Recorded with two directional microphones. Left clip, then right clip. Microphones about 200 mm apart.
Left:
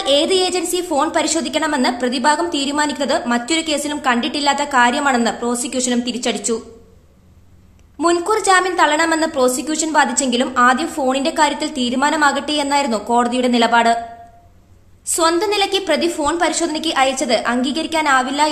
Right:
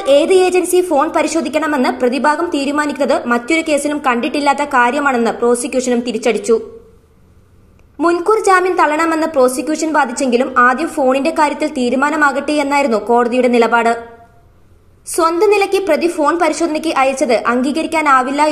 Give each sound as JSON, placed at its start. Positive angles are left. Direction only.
{"t": 0.0, "sound": "a woman's voice", "side_deg": 0}
{"t": 8.1, "sound": "a woman's voice", "side_deg": 0}
{"t": 15.0, "sound": "a woman's voice", "side_deg": 0}